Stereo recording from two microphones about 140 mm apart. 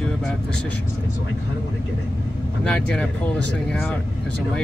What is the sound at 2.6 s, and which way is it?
Speech, 5° left (ahead or behind).